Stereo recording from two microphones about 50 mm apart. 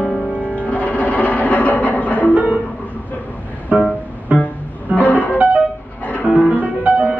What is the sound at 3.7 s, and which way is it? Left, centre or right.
Music, right.